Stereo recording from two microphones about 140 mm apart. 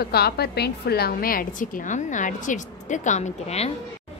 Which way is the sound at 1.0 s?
90° left.